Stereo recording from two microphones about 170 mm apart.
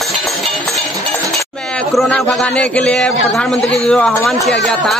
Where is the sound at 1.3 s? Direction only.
Centre (ahead or behind).